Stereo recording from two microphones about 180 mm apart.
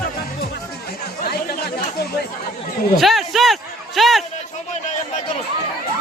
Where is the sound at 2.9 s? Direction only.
Centre (ahead or behind).